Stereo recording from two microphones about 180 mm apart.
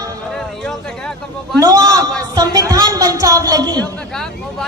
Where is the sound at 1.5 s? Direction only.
20° right (ahead or behind).